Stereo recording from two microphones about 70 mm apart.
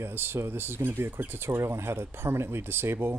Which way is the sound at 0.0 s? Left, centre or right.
Right.